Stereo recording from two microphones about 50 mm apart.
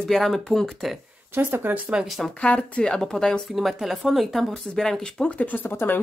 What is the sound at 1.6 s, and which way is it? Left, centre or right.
Speech, right.